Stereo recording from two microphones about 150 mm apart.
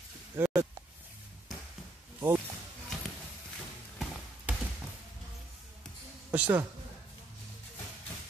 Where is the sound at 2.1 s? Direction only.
15° right (ahead or behind).